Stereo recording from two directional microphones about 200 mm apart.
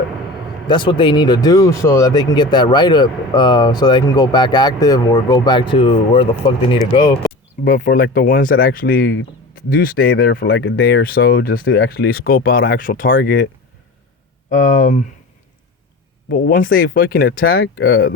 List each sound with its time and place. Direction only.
0.7 s speech: 25° left (ahead or behind)
7.6 s speech: 45° left (ahead or behind)
14.7 s speech: 40° left (ahead or behind)
16.3 s speech: 50° left (ahead or behind)